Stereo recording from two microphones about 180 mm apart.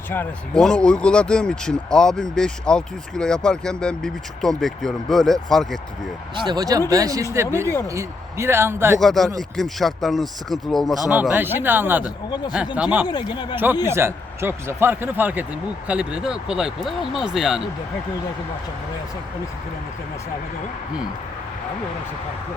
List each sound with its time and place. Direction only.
0.1 s speech: 5° left (ahead or behind)
6.3 s speech: 25° right (ahead or behind)
9.0 s speech: centre (ahead or behind)
12.3 s speech: 25° left (ahead or behind)
12.7 s speech: 10° right (ahead or behind)
13.1 s speech: 25° left (ahead or behind)
13.8 s speech: 15° right (ahead or behind)